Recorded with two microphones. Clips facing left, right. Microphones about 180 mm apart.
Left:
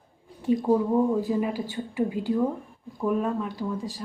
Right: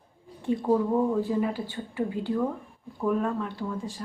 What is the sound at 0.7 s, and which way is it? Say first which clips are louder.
A woman's voice: even; 10° left (ahead or behind).